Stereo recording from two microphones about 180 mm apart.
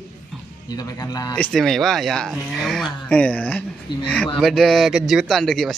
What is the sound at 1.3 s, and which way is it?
Speech, 5° left (ahead or behind).